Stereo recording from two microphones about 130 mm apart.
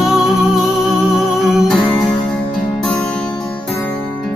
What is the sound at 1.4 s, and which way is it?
Music, centre (ahead or behind).